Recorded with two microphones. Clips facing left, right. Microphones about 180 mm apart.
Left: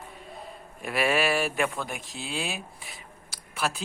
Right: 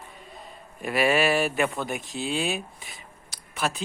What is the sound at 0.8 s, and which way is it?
Speech, centre (ahead or behind).